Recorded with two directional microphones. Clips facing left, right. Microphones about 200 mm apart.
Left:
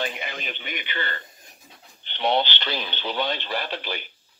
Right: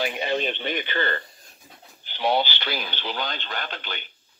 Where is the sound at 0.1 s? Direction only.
30° right (ahead or behind).